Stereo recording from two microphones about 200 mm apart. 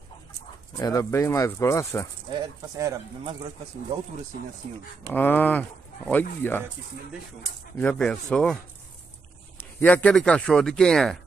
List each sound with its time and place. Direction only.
0.7 s speech: 15° left (ahead or behind)
2.3 s speech: 20° right (ahead or behind)
5.0 s speech: 10° left (ahead or behind)
7.7 s speech: 5° left (ahead or behind)
9.8 s speech: 10° left (ahead or behind)